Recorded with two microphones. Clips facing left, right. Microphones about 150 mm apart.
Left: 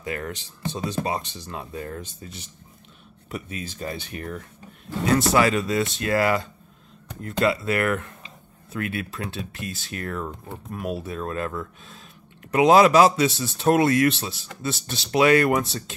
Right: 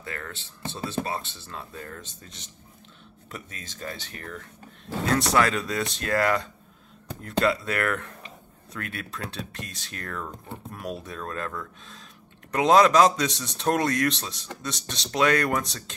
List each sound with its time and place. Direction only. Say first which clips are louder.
0.0 s speech: left 7 dB; 15° left (ahead or behind)